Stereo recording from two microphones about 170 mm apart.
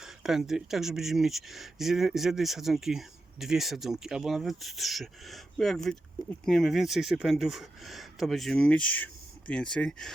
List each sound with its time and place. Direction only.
0.0 s speech: 5° right (ahead or behind)